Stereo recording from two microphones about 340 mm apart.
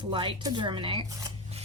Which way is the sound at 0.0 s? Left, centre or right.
Centre.